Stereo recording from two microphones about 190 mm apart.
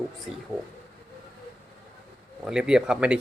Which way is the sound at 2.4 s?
5° right (ahead or behind).